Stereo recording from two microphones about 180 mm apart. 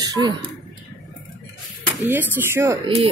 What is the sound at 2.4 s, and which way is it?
Speech, 15° right (ahead or behind).